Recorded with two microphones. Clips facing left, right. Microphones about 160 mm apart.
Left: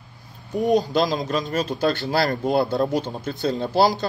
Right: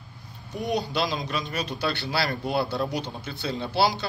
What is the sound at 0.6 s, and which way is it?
Speech, 40° left (ahead or behind).